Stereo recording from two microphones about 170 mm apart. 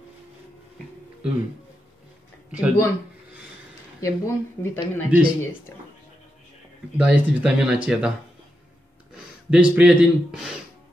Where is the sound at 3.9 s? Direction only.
20° left (ahead or behind).